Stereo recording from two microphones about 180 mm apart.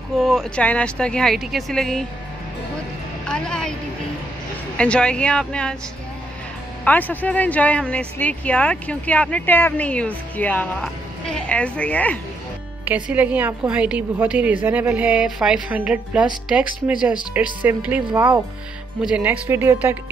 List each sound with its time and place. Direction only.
0.2 s speech: centre (ahead or behind)
3.3 s speech: 5° left (ahead or behind)
4.7 s speech: 5° left (ahead or behind)
6.8 s speech: 10° left (ahead or behind)
12.8 s a woman's voice: 10° right (ahead or behind)